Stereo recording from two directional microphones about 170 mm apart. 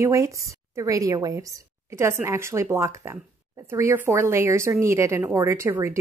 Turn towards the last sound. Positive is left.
turn(degrees=-15)  # may be behind; listen again after turning